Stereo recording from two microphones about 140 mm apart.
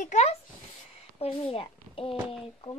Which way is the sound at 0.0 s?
55° left (ahead or behind).